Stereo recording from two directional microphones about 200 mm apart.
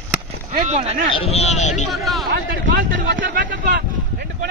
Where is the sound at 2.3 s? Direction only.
65° right (ahead or behind).